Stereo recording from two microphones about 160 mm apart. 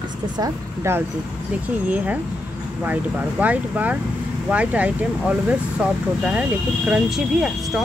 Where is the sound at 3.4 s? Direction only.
10° right (ahead or behind).